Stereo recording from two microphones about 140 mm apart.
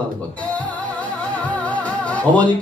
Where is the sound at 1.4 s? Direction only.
10° left (ahead or behind).